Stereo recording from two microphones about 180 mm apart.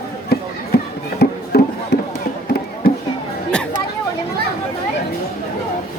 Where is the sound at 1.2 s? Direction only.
60° left (ahead or behind).